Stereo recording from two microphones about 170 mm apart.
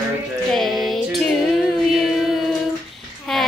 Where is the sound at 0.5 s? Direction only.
Centre (ahead or behind).